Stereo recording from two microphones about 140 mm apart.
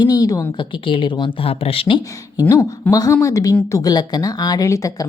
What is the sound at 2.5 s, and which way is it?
A woman's voice, 20° left (ahead or behind).